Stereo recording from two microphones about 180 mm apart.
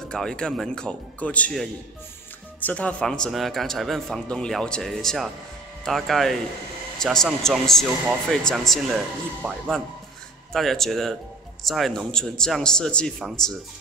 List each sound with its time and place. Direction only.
0.1 s a man's voice: 5° left (ahead or behind)